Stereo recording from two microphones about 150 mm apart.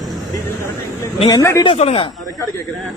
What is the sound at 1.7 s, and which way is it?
Speech, 45° left (ahead or behind).